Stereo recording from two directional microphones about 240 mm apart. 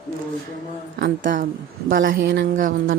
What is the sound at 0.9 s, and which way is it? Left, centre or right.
A woman's voice, right.